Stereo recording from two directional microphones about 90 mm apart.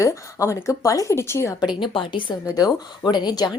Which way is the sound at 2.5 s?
50° left (ahead or behind).